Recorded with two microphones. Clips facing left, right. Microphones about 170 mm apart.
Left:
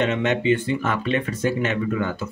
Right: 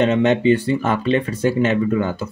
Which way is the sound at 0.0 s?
30° right (ahead or behind).